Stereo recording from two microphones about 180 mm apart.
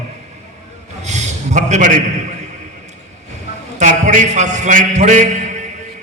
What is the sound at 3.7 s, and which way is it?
A man's voice, 45° right (ahead or behind).